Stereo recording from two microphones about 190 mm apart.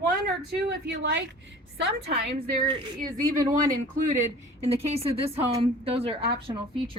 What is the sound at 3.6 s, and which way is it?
Speech, 40° right (ahead or behind).